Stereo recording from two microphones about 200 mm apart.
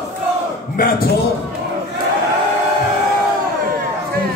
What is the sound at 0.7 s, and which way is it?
Speech, 50° left (ahead or behind).